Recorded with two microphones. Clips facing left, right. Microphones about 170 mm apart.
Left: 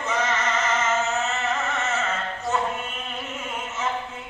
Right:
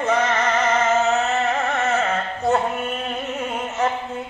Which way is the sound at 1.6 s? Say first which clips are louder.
Right 6 dB; 55° right (ahead or behind).